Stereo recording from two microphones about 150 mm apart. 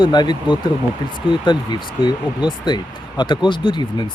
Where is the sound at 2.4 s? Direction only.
30° left (ahead or behind).